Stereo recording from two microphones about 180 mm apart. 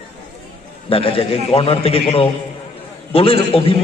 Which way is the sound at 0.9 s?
30° left (ahead or behind).